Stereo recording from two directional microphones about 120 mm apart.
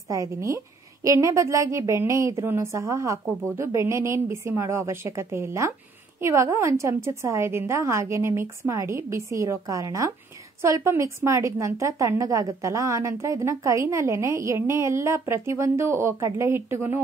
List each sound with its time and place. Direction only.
0.1 s a woman's voice: 25° right (ahead or behind)